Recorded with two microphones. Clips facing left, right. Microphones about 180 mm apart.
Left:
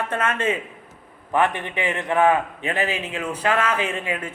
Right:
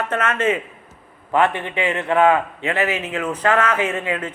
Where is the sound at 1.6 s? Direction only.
20° right (ahead or behind).